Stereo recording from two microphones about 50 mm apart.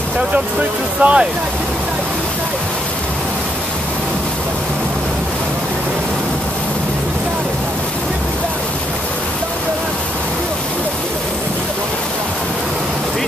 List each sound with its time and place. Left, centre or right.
1.0 s speech: right